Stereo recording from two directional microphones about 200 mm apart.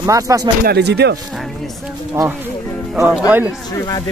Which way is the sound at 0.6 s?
55° right (ahead or behind).